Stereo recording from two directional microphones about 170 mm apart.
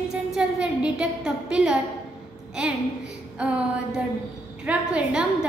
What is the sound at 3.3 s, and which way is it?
A woman's voice, 5° right (ahead or behind).